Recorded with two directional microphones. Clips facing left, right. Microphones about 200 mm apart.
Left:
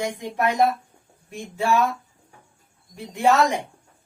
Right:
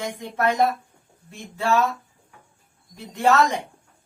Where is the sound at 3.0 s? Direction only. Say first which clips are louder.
Left 1 dB; 10° left (ahead or behind).